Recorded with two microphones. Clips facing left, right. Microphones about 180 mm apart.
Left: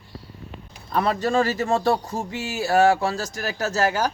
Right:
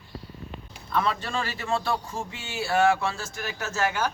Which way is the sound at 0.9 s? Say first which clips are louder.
Left 6 dB; 40° left (ahead or behind).